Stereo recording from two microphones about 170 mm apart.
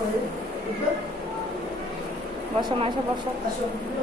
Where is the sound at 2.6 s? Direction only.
30° right (ahead or behind).